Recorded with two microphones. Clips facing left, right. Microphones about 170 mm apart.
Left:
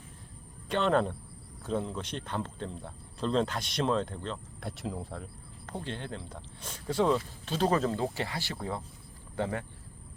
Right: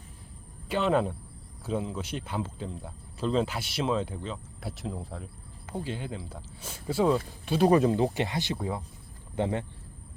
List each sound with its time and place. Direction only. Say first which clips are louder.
0.7 s speech: right 1 dB; 5° right (ahead or behind); by 9.6 s 20° right (ahead or behind)